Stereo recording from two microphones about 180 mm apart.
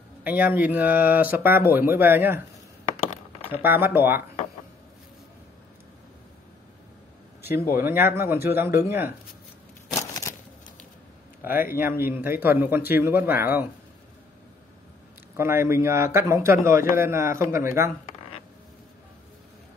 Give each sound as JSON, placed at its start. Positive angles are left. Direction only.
{"t": 0.2, "sound": "a man's voice", "side_deg": -10}
{"t": 3.5, "sound": "a man's voice", "side_deg": -10}
{"t": 7.7, "sound": "a man's voice", "side_deg": -10}
{"t": 9.8, "sound": "a sound", "side_deg": 20}
{"t": 11.7, "sound": "a man's voice", "side_deg": -10}
{"t": 15.3, "sound": "a man's voice", "side_deg": -15}